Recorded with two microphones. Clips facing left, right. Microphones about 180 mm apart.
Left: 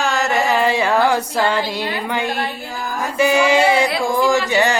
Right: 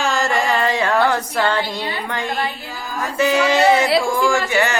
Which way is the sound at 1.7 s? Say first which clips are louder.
Left 3 dB; 10° left (ahead or behind).